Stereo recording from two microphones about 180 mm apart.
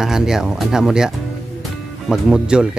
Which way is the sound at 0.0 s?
5° right (ahead or behind).